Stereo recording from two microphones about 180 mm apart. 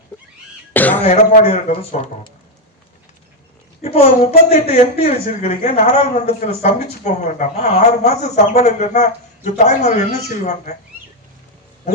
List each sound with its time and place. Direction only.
0.7 s throat clearing: 10° left (ahead or behind)
1.0 s a woman's voice: 35° left (ahead or behind)
3.8 s a woman's voice: 35° left (ahead or behind)